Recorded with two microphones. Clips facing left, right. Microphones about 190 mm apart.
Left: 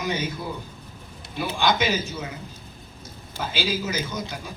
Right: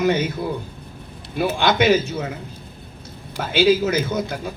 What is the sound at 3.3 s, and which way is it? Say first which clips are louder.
A man's voice: right 11 dB; 60° right (ahead or behind).